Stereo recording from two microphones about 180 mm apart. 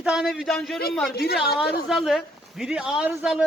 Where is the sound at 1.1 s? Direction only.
60° left (ahead or behind).